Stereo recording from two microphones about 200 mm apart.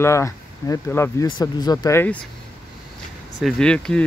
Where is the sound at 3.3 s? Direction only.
Centre (ahead or behind).